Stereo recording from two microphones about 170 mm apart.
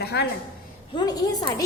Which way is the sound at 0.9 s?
25° left (ahead or behind).